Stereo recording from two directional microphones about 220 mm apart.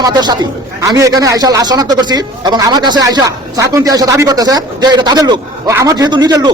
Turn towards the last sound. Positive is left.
turn(degrees=-20)  # may be behind; listen again after turning